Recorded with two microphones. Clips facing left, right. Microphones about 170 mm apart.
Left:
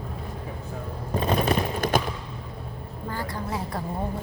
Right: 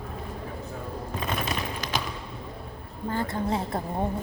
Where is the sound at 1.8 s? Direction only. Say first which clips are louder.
Left 7 dB; 50° left (ahead or behind).